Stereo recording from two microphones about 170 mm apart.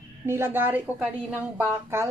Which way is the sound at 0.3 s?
10° right (ahead or behind).